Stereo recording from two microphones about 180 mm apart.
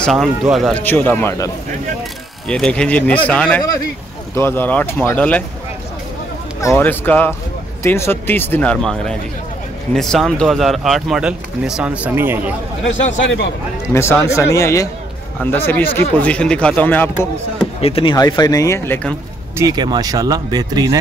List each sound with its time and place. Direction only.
0.0 s a man's voice: centre (ahead or behind)
6.6 s a man's voice: 15° left (ahead or behind); by 12.5 s 10° right (ahead or behind)
13.9 s speech: 15° left (ahead or behind)
17.7 s speech: 30° left (ahead or behind)
18.1 s speech: 20° left (ahead or behind)
19.5 s speech: 20° right (ahead or behind)